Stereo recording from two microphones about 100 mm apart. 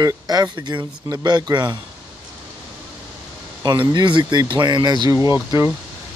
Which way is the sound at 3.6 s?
45° right (ahead or behind).